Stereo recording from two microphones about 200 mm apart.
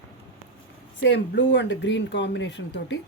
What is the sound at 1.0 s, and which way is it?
Speech, 60° left (ahead or behind).